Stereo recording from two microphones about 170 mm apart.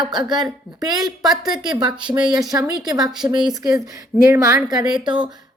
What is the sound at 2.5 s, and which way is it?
A woman's voice, 15° right (ahead or behind).